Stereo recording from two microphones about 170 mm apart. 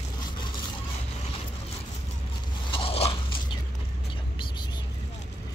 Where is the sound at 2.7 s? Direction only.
35° left (ahead or behind).